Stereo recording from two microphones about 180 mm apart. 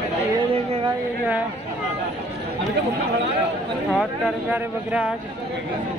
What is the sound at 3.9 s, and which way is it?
Speech, 5° right (ahead or behind).